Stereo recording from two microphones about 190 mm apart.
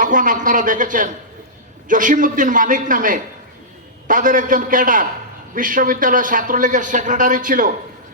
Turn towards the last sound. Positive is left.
turn(degrees=-45)  # may be behind; listen again after turning